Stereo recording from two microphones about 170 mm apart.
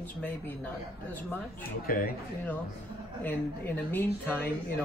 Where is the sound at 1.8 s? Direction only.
60° left (ahead or behind).